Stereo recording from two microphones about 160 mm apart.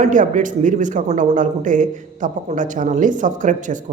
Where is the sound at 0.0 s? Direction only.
50° right (ahead or behind).